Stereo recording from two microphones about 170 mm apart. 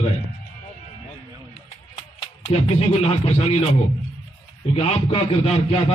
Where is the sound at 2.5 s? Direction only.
35° left (ahead or behind).